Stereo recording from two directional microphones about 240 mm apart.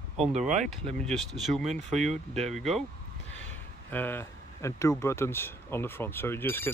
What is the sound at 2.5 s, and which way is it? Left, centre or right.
Speech, centre.